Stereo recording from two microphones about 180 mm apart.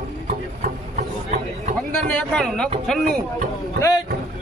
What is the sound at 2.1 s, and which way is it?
A man's voice, 5° left (ahead or behind).